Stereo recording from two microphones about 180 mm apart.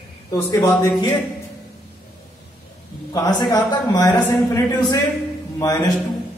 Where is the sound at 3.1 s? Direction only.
20° left (ahead or behind).